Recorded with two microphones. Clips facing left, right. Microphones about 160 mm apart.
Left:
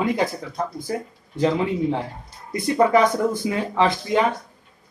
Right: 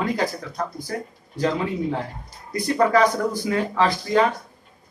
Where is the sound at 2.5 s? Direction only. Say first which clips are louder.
Left 2 dB; 20° left (ahead or behind).